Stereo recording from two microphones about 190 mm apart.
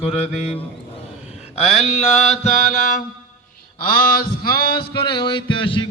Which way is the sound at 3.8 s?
50° left (ahead or behind).